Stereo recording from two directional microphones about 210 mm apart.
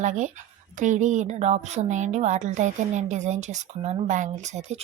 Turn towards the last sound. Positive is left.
turn(degrees=-35)  # may be behind; listen again after turning